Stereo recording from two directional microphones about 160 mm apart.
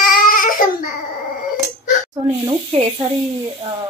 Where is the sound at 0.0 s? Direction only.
60° left (ahead or behind).